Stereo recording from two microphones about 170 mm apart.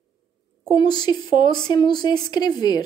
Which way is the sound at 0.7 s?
25° left (ahead or behind).